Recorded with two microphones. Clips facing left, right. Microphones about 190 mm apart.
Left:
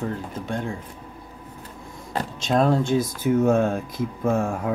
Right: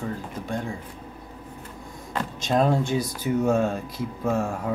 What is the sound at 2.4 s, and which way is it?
Speech, 5° right (ahead or behind).